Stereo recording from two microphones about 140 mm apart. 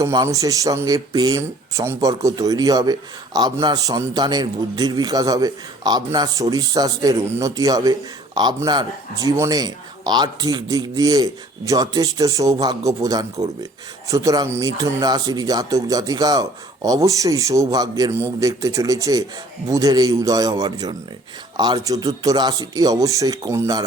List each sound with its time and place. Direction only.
0.0 s speech: 25° right (ahead or behind)